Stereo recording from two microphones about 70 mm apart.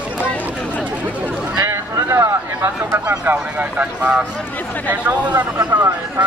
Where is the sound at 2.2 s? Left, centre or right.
Right.